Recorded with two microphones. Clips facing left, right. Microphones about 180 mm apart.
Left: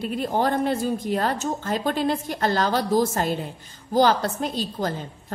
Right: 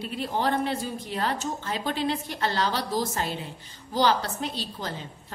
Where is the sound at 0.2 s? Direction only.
45° left (ahead or behind).